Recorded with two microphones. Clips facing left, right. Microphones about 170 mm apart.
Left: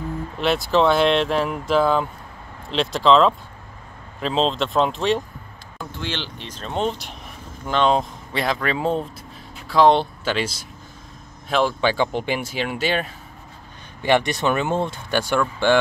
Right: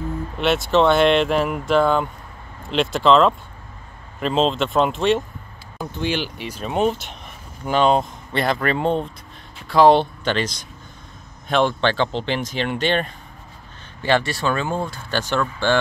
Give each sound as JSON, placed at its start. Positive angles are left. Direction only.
{"t": 0.4, "sound": "speech", "side_deg": 0}
{"t": 5.8, "sound": "speech", "side_deg": -20}
{"t": 14.0, "sound": "speech", "side_deg": 15}